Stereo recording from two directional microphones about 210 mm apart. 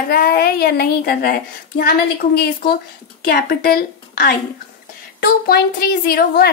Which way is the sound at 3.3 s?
50° left (ahead or behind).